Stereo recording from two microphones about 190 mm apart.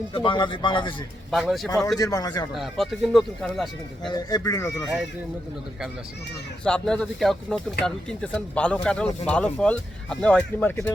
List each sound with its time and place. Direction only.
0.1 s speech: 25° left (ahead or behind)
1.3 s speech: centre (ahead or behind)
2.0 s speech: 20° left (ahead or behind)
2.5 s speech: centre (ahead or behind)
4.1 s speech: 20° left (ahead or behind)
6.7 s speech: 5° left (ahead or behind)